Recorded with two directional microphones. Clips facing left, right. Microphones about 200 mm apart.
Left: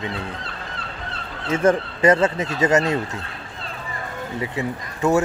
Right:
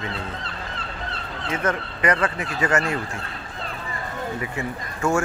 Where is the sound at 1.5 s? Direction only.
30° left (ahead or behind).